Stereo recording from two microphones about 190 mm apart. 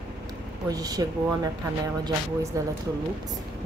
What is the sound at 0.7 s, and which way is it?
Speech, 20° right (ahead or behind).